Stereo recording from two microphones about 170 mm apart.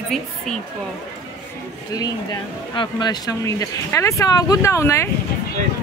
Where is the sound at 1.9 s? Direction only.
20° left (ahead or behind).